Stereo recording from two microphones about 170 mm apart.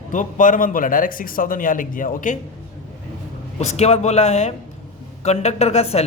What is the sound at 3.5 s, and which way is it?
Speech, 40° left (ahead or behind).